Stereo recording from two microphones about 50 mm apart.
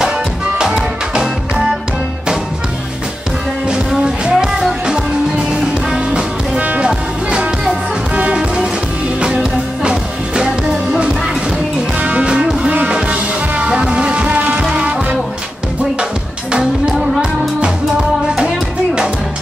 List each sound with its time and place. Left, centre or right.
0.0 s music: centre
4.0 s music: centre
9.2 s music: centre
12.0 s music: right
14.6 s music: centre